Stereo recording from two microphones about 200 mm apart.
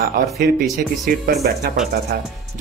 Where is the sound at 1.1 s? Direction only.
50° right (ahead or behind).